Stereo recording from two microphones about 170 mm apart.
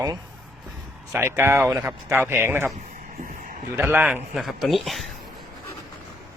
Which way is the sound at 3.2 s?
55° right (ahead or behind).